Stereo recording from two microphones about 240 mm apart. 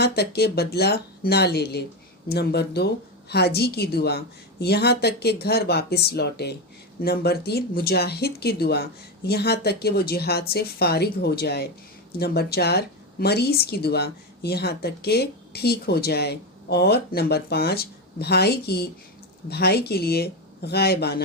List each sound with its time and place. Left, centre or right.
0.0 s speech: left